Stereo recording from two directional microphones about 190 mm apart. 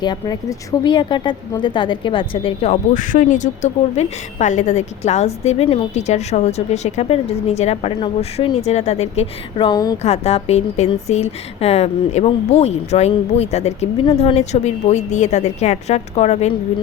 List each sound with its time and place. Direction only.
0.0 s speech: 20° left (ahead or behind)
10.0 s speech: 35° left (ahead or behind)